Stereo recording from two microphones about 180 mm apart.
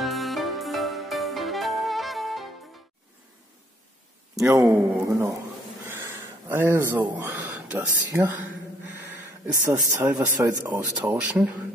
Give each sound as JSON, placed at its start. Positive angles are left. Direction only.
{"t": 0.0, "sound": "music", "side_deg": 0}
{"t": 4.6, "sound": "speech", "side_deg": -15}
{"t": 6.5, "sound": "speech", "side_deg": -15}